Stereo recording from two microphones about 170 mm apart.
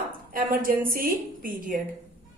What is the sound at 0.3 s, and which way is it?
A woman's voice, 55° right (ahead or behind).